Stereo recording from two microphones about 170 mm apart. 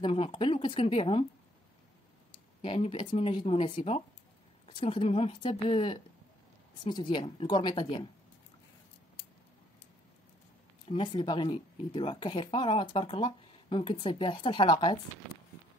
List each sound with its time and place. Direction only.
0.0 s speech: 30° left (ahead or behind)
2.6 s speech: 30° left (ahead or behind)
10.9 s speech: 30° left (ahead or behind)